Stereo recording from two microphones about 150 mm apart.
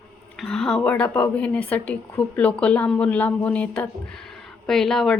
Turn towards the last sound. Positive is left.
turn(degrees=5)  # may be behind; listen again after turning